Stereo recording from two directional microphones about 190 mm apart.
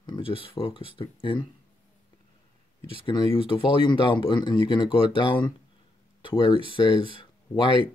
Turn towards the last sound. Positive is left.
turn(degrees=25)  # may be behind; listen again after turning